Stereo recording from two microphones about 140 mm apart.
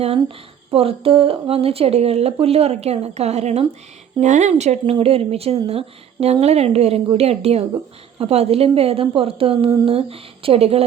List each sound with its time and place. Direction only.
0.7 s speech: 45° right (ahead or behind)